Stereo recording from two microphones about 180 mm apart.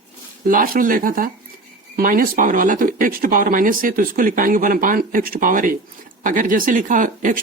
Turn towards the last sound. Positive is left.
turn(degrees=-45)  # may be behind; listen again after turning